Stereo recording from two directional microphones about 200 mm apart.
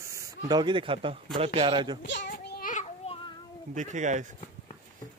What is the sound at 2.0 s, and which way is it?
Speech, 65° left (ahead or behind).